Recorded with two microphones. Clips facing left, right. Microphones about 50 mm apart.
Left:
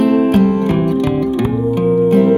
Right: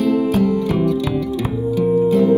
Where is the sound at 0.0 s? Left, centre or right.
Left.